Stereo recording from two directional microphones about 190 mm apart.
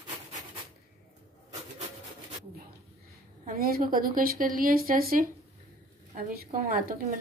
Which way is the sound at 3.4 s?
50° right (ahead or behind).